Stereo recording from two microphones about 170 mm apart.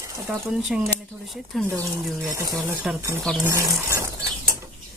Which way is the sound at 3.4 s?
15° right (ahead or behind).